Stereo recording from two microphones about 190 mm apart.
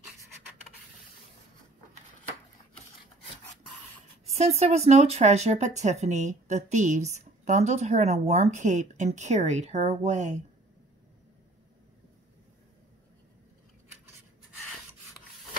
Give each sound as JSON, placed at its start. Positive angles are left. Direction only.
{"t": 4.4, "sound": "speech", "side_deg": -35}